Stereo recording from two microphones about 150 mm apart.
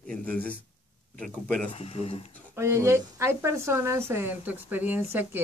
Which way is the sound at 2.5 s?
20° right (ahead or behind).